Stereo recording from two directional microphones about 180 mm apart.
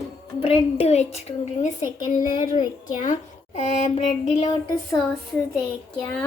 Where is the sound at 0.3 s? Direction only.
35° left (ahead or behind).